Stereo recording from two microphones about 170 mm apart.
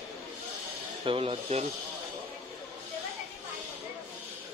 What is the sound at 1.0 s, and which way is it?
Speech, 35° right (ahead or behind).